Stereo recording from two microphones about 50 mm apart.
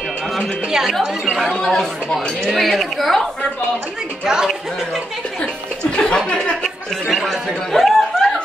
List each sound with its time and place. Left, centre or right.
0.7 s a woman's voice: centre
0.9 s a woman's voice: centre
5.4 s chuckle: left
6.3 s speech: centre
7.1 s speech: centre